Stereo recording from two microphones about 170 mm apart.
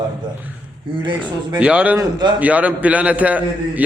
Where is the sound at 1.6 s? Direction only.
10° right (ahead or behind).